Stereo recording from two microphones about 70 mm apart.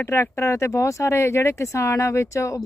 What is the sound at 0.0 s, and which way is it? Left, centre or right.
Speech, left.